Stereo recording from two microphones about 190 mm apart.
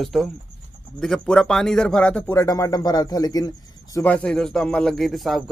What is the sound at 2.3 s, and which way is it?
Speech, 20° left (ahead or behind).